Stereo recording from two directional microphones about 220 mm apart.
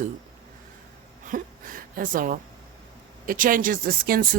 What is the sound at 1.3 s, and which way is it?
Speech, 40° right (ahead or behind).